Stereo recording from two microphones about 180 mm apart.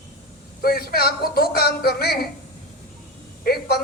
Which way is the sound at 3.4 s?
60° left (ahead or behind).